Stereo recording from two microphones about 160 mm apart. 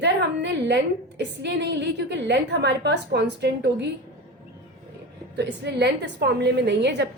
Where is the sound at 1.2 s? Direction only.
90° right.